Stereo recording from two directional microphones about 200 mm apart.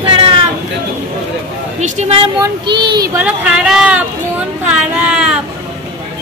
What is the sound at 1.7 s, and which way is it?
Speech, 35° right (ahead or behind).